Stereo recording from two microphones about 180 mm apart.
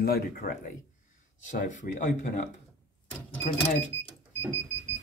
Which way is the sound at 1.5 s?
45° left (ahead or behind).